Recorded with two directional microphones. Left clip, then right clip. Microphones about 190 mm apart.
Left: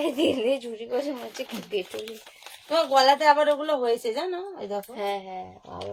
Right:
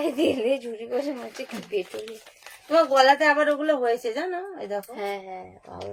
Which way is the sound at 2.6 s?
10° right (ahead or behind).